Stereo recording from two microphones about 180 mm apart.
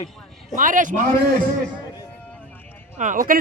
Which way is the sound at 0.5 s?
45° right (ahead or behind).